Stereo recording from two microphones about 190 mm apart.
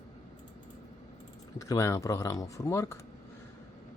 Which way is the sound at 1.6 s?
15° left (ahead or behind).